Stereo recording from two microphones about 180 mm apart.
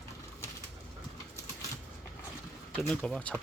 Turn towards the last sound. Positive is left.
turn(degrees=5)  # may be behind; listen again after turning